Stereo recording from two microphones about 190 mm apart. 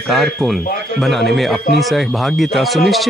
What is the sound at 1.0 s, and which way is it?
Speech, centre (ahead or behind).